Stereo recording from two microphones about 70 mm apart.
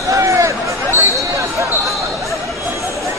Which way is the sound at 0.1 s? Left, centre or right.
Right.